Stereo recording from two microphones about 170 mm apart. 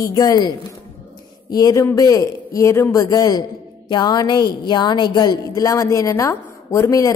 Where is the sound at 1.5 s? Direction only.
20° left (ahead or behind).